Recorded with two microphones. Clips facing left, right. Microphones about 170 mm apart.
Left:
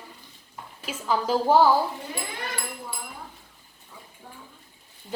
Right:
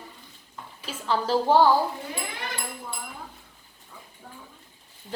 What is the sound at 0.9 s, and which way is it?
Speech, 10° left (ahead or behind).